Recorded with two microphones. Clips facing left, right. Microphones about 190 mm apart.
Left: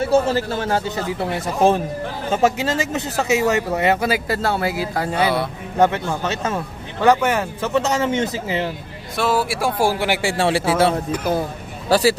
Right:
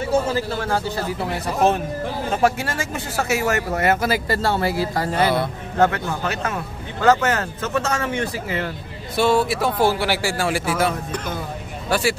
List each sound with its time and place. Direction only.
0.3 s speech: 20° left (ahead or behind); by 5.5 s 5° left (ahead or behind)
5.8 s speech: 20° left (ahead or behind)
9.1 s speech: centre (ahead or behind); by 10.3 s 15° left (ahead or behind)
10.3 s a man's voice: 30° left (ahead or behind)